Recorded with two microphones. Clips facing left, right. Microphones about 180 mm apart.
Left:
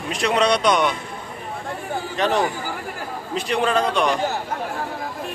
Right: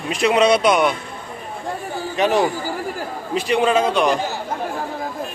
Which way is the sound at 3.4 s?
5° right (ahead or behind).